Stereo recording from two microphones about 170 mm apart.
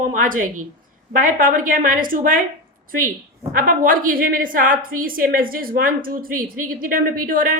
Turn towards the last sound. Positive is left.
turn(degrees=-55)  # may be behind; listen again after turning